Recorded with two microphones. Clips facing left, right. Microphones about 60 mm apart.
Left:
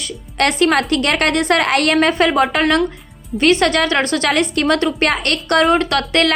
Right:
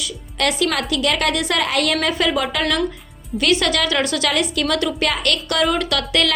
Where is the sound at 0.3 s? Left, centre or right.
Left.